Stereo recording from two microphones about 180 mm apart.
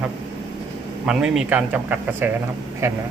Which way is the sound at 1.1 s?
5° right (ahead or behind).